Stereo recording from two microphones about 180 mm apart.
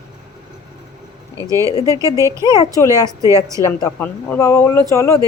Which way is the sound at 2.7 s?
20° left (ahead or behind).